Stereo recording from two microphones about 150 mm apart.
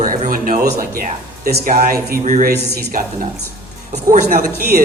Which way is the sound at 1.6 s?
70° right (ahead or behind).